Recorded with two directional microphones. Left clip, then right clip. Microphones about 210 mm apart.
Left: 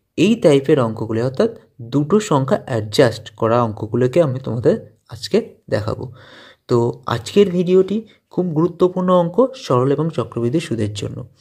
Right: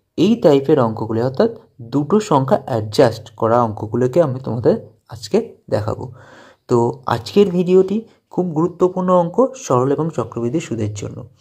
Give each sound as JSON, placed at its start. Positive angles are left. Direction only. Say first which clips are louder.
{"t": 0.1, "sound": "speech", "louder": "even", "side_deg": 20}
{"t": 8.5, "sound": "speech", "louder": "left 1 dB", "side_deg": 40}
{"t": 9.6, "sound": "speech", "louder": "even", "side_deg": 20}
{"t": 10.3, "sound": "speech", "louder": "left 1 dB", "side_deg": 45}